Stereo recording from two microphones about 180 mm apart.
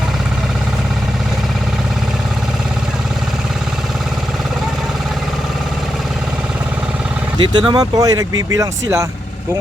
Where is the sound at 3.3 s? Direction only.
Centre (ahead or behind).